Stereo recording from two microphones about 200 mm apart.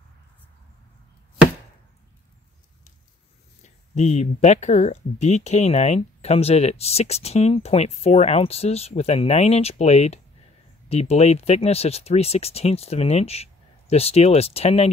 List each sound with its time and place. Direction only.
3.9 s speech: 35° left (ahead or behind)